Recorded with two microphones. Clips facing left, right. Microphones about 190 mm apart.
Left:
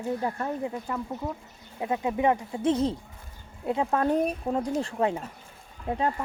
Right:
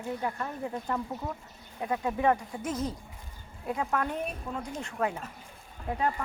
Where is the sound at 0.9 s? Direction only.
5° left (ahead or behind).